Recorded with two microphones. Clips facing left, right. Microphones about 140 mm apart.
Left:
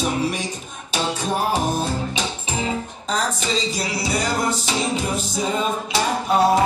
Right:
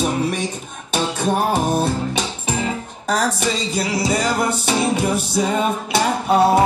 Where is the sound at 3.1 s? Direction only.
60° right (ahead or behind).